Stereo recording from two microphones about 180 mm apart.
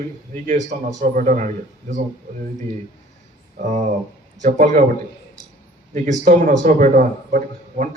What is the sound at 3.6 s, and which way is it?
A man's voice, 40° right (ahead or behind).